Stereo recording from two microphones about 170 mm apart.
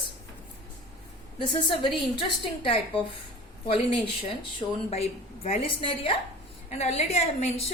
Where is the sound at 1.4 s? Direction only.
30° left (ahead or behind).